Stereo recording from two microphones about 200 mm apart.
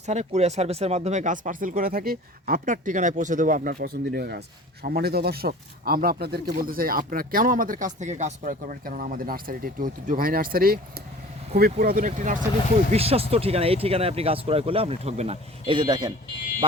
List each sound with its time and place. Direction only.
0.0 s speech: 35° right (ahead or behind)
12.9 s speech: 30° right (ahead or behind)